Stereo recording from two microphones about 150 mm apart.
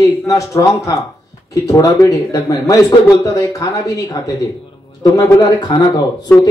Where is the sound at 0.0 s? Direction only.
20° left (ahead or behind).